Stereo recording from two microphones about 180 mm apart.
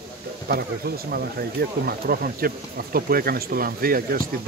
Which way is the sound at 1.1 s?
60° right (ahead or behind).